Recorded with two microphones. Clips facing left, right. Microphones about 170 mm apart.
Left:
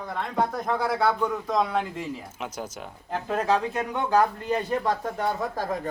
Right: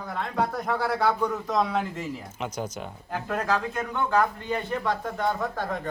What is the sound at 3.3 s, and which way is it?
Speech, 25° left (ahead or behind).